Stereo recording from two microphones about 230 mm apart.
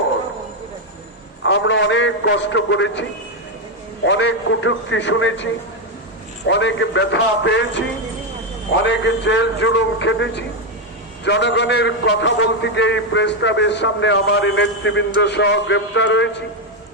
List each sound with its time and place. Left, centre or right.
1.5 s a man's voice: left
4.0 s a man's voice: left
6.5 s a man's voice: left
8.8 s a man's voice: left